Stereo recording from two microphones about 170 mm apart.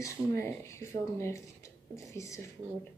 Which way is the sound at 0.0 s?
15° left (ahead or behind).